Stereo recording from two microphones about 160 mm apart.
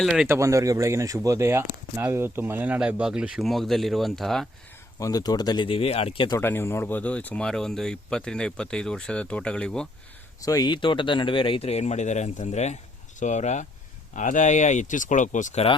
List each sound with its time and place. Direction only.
0.0 s speech: centre (ahead or behind)
0.3 s speech: 20° right (ahead or behind); by 4.4 s centre (ahead or behind)
4.9 s speech: 20° left (ahead or behind); by 6.2 s 40° left (ahead or behind)
6.4 s speech: 15° left (ahead or behind)
10.4 s speech: 25° left (ahead or behind); by 15.6 s 50° left (ahead or behind)